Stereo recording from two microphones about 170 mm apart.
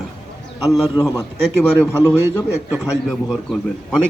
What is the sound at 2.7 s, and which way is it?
A man's voice, centre (ahead or behind).